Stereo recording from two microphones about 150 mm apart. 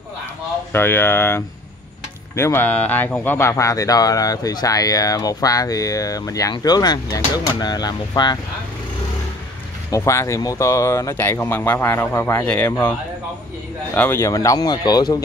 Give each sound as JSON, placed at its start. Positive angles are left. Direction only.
{"t": 0.7, "sound": "speech", "side_deg": 15}
{"t": 9.8, "sound": "speech", "side_deg": 20}
{"t": 13.9, "sound": "speech", "side_deg": 15}